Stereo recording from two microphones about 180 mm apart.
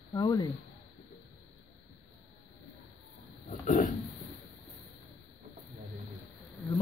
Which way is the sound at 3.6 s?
45° left (ahead or behind).